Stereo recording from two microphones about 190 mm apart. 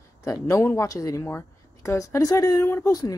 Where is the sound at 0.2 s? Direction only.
15° left (ahead or behind).